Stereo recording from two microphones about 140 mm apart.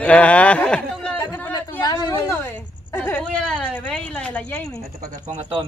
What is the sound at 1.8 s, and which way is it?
Speech, 25° left (ahead or behind).